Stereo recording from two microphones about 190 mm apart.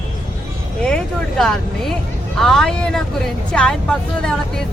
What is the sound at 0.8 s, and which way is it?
Speech, 5° left (ahead or behind).